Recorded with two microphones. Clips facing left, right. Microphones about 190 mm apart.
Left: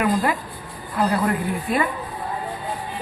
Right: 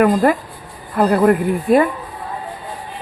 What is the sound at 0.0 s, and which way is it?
Speech, 50° right (ahead or behind).